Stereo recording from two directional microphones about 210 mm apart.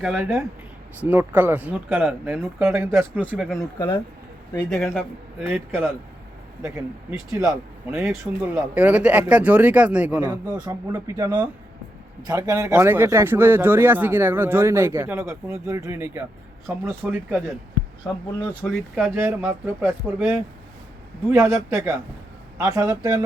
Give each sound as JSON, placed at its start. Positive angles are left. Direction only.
{"t": 0.0, "sound": "speech", "side_deg": -5}
{"t": 3.2, "sound": "a man's voice", "side_deg": 0}
{"t": 4.7, "sound": "a man's voice", "side_deg": 5}
{"t": 7.1, "sound": "speech", "side_deg": -10}
{"t": 18.6, "sound": "speech", "side_deg": 0}